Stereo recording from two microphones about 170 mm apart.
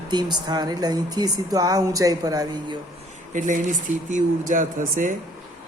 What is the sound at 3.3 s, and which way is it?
Speech, 50° right (ahead or behind).